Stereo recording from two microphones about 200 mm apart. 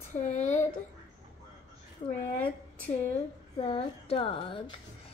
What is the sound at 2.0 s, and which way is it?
Speech, 25° left (ahead or behind).